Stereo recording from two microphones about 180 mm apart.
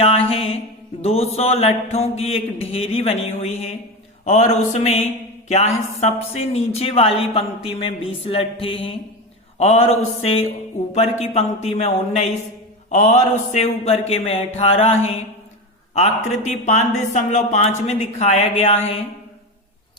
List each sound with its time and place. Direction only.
0.0 s mantra: 35° left (ahead or behind)
1.0 s speech: 35° left (ahead or behind)
10.9 s speech: 35° left (ahead or behind)